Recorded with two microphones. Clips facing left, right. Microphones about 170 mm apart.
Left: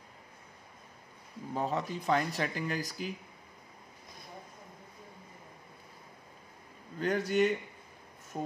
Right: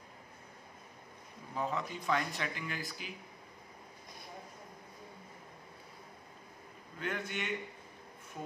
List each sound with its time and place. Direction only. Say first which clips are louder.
1.5 s speech: left 4 dB; 35° left (ahead or behind)
7.0 s speech: left 11 dB; 40° left (ahead or behind)